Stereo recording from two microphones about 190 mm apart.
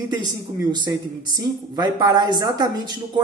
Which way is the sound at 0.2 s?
20° right (ahead or behind).